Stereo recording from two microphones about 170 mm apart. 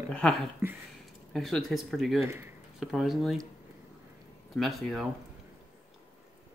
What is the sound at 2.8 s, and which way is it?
Speech, centre (ahead or behind).